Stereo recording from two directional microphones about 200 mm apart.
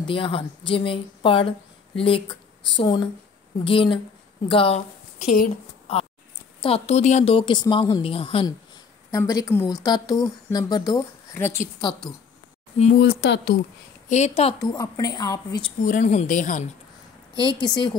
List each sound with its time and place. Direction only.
0.1 s a woman's voice: 25° left (ahead or behind)
6.6 s a woman's voice: 30° left (ahead or behind)
9.1 s a woman's voice: 15° left (ahead or behind)
12.7 s speech: 35° left (ahead or behind)
13.0 s speech: 55° left (ahead or behind)
14.0 s a woman's voice: 35° left (ahead or behind)
14.6 s speech: 15° left (ahead or behind)
15.8 s speech: 40° left (ahead or behind)
17.4 s a woman's voice: 25° left (ahead or behind)